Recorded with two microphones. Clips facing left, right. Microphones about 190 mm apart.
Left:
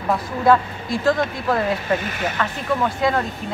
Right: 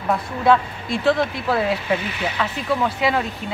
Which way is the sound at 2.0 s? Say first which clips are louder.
Left 1 dB; 45° left (ahead or behind).